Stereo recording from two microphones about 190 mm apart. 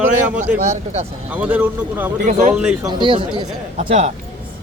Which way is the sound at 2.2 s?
40° right (ahead or behind).